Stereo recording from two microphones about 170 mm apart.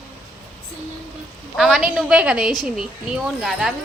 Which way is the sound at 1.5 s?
Centre (ahead or behind).